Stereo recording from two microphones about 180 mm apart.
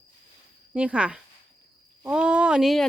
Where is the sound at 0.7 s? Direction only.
5° right (ahead or behind).